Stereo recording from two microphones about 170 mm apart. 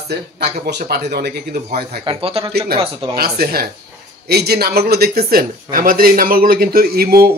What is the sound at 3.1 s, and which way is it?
Speech, 65° right (ahead or behind).